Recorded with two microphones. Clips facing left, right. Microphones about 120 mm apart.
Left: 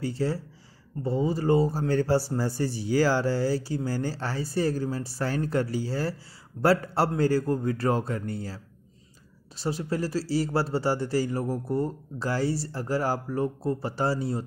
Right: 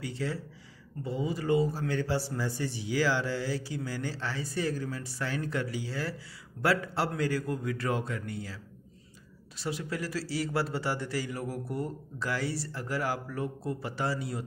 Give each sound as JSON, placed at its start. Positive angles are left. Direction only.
{"t": 0.0, "sound": "a man's voice", "side_deg": 35}
{"t": 9.6, "sound": "a man's voice", "side_deg": 35}